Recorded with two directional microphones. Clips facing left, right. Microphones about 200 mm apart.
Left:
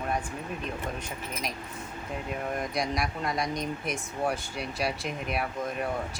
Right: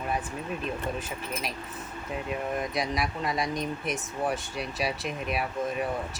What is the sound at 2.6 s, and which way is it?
Speech, centre (ahead or behind).